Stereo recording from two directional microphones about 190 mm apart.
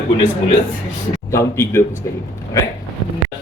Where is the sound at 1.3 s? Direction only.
15° left (ahead or behind).